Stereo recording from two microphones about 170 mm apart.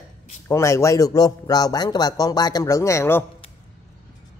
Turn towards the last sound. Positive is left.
turn(degrees=15)  # may be behind; listen again after turning